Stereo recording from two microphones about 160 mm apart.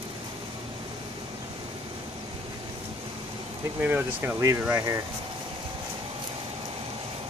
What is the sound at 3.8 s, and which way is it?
Speech, 10° right (ahead or behind).